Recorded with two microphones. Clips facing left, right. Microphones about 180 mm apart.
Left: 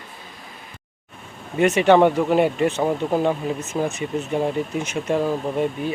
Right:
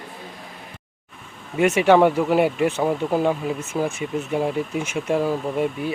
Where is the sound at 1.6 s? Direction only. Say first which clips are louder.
Left 1 dB; 10° right (ahead or behind).